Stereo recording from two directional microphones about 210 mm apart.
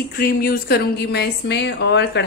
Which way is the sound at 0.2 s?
45° left (ahead or behind).